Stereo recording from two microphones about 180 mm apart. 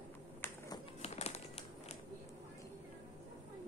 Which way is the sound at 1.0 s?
35° left (ahead or behind).